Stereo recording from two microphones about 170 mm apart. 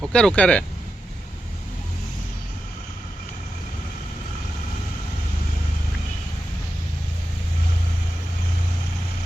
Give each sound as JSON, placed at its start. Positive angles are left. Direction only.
{"t": 0.0, "sound": "speech", "side_deg": 5}